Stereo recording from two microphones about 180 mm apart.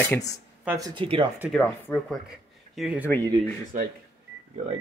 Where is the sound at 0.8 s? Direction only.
30° right (ahead or behind).